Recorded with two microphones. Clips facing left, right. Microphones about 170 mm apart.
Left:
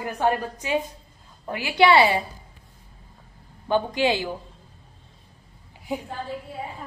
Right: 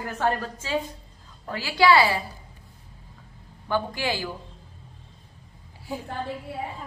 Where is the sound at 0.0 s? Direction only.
15° left (ahead or behind).